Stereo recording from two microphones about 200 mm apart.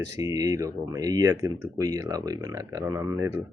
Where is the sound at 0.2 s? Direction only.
15° right (ahead or behind).